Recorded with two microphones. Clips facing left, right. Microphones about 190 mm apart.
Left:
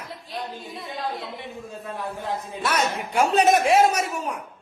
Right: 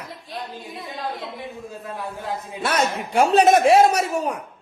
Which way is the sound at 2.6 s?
30° right (ahead or behind).